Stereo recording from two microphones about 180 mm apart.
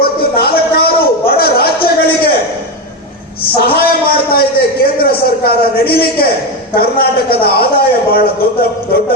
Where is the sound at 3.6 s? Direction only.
60° left (ahead or behind).